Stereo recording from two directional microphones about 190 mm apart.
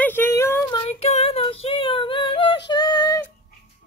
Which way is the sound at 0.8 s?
35° left (ahead or behind).